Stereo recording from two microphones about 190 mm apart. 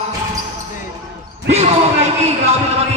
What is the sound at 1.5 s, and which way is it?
Speech, 35° right (ahead or behind).